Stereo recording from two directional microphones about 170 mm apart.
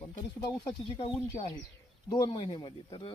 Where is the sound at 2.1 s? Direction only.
25° left (ahead or behind).